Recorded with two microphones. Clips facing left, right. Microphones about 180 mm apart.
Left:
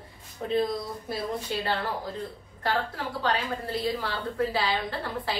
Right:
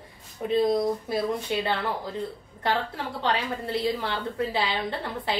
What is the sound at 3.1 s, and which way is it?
Speech, 25° right (ahead or behind).